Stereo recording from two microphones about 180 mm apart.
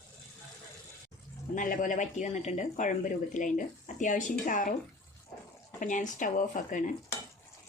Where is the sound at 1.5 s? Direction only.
45° left (ahead or behind).